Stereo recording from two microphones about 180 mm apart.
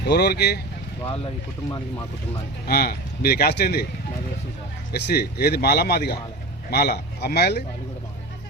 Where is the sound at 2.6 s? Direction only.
60° left (ahead or behind).